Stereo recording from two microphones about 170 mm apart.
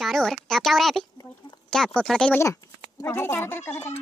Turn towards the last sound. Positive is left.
turn(degrees=10)  # may be behind; listen again after turning